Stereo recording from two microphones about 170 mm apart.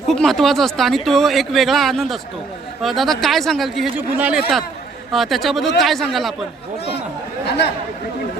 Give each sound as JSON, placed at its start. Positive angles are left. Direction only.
{"t": 0.1, "sound": "speech", "side_deg": 0}
{"t": 7.4, "sound": "speech", "side_deg": 80}